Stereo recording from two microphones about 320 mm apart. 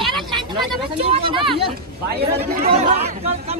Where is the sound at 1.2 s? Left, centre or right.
Centre.